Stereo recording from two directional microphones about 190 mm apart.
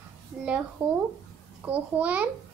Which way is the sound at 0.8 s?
15° right (ahead or behind).